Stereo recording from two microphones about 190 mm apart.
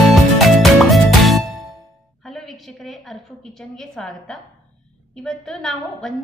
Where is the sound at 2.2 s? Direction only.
Centre (ahead or behind).